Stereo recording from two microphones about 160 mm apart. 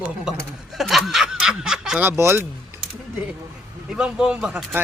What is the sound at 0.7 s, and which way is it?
Snicker, centre (ahead or behind).